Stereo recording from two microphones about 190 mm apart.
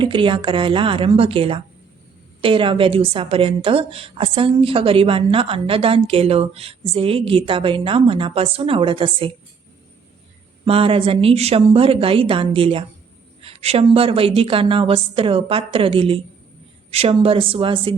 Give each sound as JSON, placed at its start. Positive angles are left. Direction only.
{"t": 0.0, "sound": "a woman's voice", "side_deg": -25}
{"t": 10.7, "sound": "a woman's voice", "side_deg": -30}